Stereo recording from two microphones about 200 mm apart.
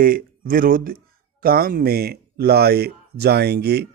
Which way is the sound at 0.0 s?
45° right (ahead or behind).